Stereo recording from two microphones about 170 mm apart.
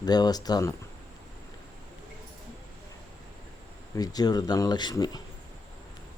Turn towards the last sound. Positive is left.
turn(degrees=25)  # may be behind; listen again after turning